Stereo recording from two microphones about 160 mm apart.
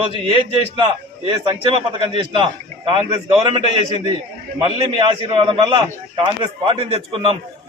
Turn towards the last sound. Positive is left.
turn(degrees=-35)  # may be behind; listen again after turning